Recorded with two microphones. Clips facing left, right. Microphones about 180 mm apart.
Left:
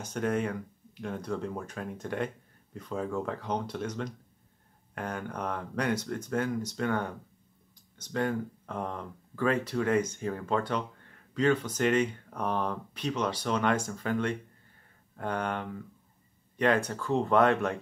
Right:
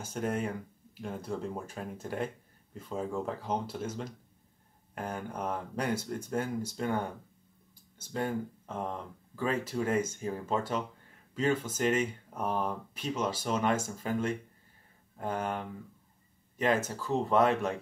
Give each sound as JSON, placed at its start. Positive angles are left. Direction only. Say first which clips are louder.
{"t": 0.0, "sound": "speech", "louder": "left 3 dB", "side_deg": -5}
{"t": 2.9, "sound": "speech", "louder": "left 2 dB", "side_deg": -25}
{"t": 3.3, "sound": "speech", "louder": "left 1 dB", "side_deg": -5}
{"t": 5.3, "sound": "speech", "louder": "left 1 dB", "side_deg": -5}